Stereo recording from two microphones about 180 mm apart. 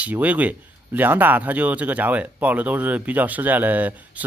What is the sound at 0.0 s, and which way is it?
Speech, 10° right (ahead or behind).